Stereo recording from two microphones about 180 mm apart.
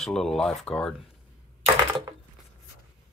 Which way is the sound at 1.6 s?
25° right (ahead or behind).